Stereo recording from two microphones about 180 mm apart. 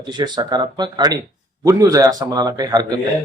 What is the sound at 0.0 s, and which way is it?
Speech, 25° right (ahead or behind).